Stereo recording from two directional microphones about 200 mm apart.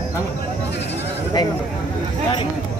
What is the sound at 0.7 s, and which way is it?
Bleat, 60° left (ahead or behind).